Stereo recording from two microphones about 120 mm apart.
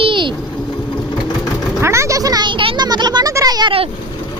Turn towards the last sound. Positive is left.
turn(degrees=-35)  # may be behind; listen again after turning